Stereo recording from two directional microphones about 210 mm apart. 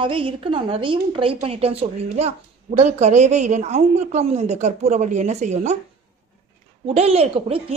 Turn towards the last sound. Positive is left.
turn(degrees=-30)  # may be behind; listen again after turning